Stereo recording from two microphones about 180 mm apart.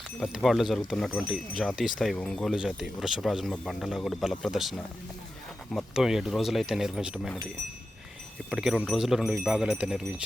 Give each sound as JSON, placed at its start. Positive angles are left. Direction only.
{"t": 0.2, "sound": "speech", "side_deg": 0}
{"t": 8.4, "sound": "speech", "side_deg": -5}